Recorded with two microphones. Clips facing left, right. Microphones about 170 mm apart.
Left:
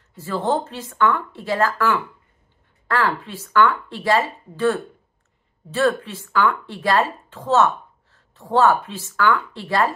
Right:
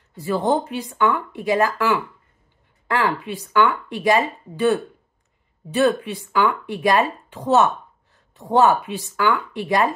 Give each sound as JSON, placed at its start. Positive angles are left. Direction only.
{"t": 0.1, "sound": "speech", "side_deg": -15}